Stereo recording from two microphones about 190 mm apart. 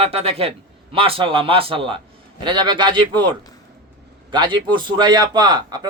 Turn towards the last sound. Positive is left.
turn(degrees=-20)  # may be behind; listen again after turning